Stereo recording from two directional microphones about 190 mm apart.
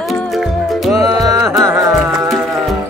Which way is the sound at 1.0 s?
20° right (ahead or behind).